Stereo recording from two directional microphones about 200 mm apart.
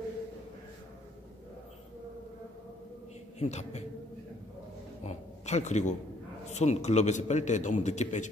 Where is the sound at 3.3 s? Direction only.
35° left (ahead or behind).